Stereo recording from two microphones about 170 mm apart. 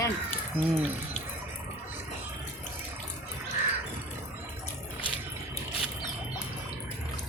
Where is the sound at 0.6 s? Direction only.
10° right (ahead or behind).